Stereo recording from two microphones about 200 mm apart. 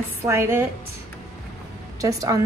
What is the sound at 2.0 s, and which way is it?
Speech, 15° right (ahead or behind).